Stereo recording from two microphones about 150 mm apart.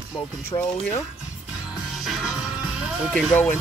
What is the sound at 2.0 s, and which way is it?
Music, centre (ahead or behind).